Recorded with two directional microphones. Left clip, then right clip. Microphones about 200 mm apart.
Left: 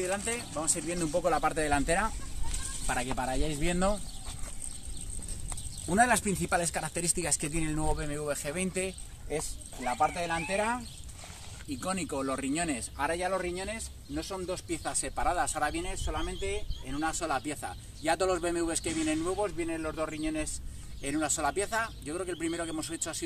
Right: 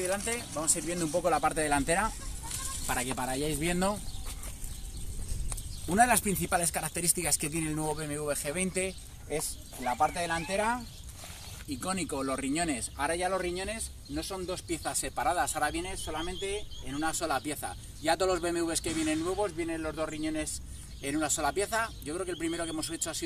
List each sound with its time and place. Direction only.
0.0 s speech: centre (ahead or behind)
5.9 s speech: 15° left (ahead or behind)
7.9 s speech: 5° left (ahead or behind)